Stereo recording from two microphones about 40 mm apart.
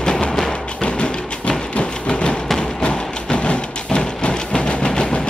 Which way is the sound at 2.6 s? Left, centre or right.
Left.